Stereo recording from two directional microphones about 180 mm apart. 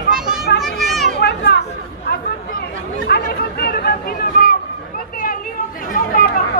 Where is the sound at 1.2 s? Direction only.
65° left (ahead or behind).